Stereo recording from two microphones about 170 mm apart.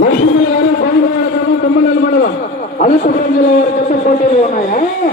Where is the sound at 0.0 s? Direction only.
55° left (ahead or behind).